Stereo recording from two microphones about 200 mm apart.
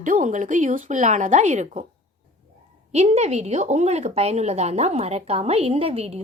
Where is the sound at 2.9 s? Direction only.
35° right (ahead or behind).